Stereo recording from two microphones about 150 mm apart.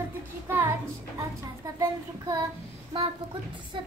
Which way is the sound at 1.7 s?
25° right (ahead or behind).